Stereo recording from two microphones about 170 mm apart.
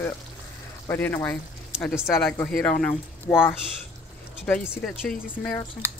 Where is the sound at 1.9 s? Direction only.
5° right (ahead or behind).